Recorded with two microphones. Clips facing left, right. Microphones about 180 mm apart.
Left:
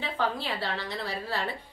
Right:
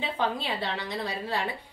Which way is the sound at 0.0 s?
20° right (ahead or behind).